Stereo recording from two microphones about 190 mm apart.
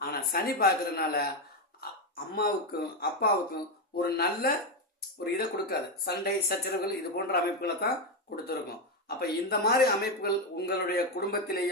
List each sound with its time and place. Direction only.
0.0 s speech: 55° left (ahead or behind)
2.3 s speech: 55° left (ahead or behind)
9.0 s speech: 55° left (ahead or behind)